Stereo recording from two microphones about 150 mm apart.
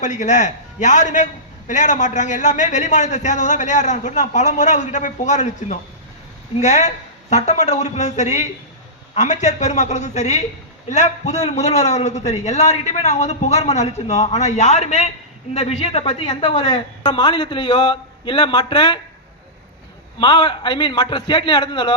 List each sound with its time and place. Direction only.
0.0 s a man's voice: 55° left (ahead or behind); by 18.9 s 30° left (ahead or behind)
20.1 s a woman's voice: 30° left (ahead or behind)